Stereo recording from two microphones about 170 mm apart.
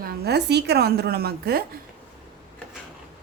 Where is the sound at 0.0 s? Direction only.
75° right (ahead or behind).